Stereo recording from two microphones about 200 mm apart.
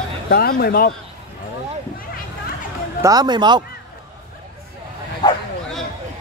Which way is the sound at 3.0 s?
20° right (ahead or behind).